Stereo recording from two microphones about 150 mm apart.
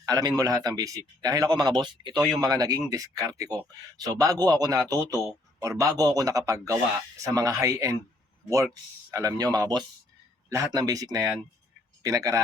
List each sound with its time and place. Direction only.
0.0 s speech: 25° right (ahead or behind)